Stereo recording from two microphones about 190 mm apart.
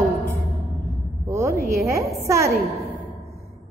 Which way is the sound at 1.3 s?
15° right (ahead or behind).